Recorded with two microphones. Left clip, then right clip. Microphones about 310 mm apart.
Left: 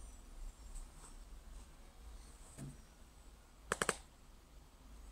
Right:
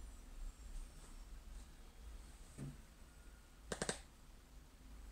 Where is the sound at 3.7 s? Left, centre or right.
Left.